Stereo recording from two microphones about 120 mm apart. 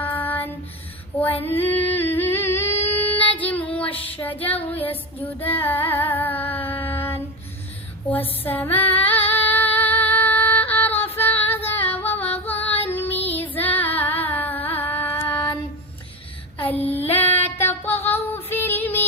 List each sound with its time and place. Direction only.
0.0 s child singing: 15° left (ahead or behind)
1.2 s female singing: 15° left (ahead or behind)
1.9 s humming: 15° left (ahead or behind)
2.8 s child singing: 15° left (ahead or behind)
3.8 s child singing: 50° left (ahead or behind)
4.2 s female singing: 15° left (ahead or behind)
8.4 s female singing: 15° left (ahead or behind)
12.6 s child singing: 15° left (ahead or behind)
14.3 s carnatic music: 15° left (ahead or behind)
14.8 s music: 15° left (ahead or behind)
15.3 s child singing: 10° left (ahead or behind)
16.6 s child singing: 15° left (ahead or behind)
17.1 s female singing: 15° left (ahead or behind)